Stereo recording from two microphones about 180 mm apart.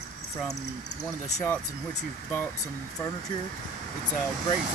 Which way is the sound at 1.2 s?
15° left (ahead or behind).